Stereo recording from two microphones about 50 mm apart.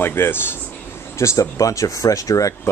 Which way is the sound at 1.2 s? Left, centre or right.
Left.